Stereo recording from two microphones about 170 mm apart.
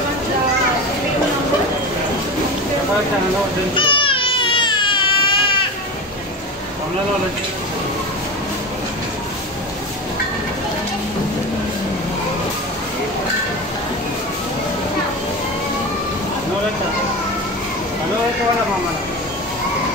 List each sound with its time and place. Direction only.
3.7 s baby cry: 30° left (ahead or behind)